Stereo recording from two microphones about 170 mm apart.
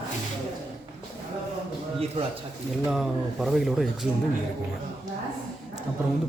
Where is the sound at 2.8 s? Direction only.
Centre (ahead or behind).